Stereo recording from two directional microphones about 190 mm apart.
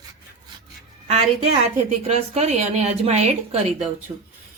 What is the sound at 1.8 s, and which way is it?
A woman's voice, 35° right (ahead or behind).